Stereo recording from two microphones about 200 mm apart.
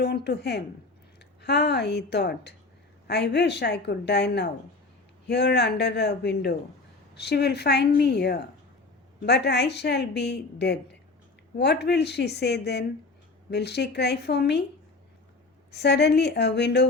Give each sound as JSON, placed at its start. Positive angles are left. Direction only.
{"t": 0.0, "sound": "a woman's voice", "side_deg": 55}
{"t": 15.7, "sound": "a woman's voice", "side_deg": 55}